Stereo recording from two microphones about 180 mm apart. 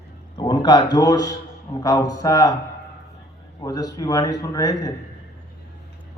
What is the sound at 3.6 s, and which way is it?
A man's voice, 20° left (ahead or behind).